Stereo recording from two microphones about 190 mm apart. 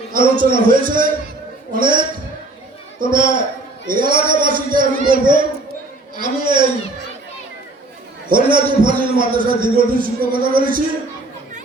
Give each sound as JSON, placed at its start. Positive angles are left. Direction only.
{"t": 0.1, "sound": "a man's voice", "side_deg": -50}
{"t": 3.2, "sound": "a man's voice", "side_deg": -45}
{"t": 5.0, "sound": "a man's voice", "side_deg": -25}
{"t": 6.1, "sound": "a man's voice", "side_deg": -45}
{"t": 8.3, "sound": "a man's voice", "side_deg": -45}